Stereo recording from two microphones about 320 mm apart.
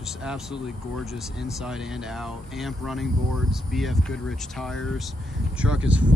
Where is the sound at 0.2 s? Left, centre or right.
Centre.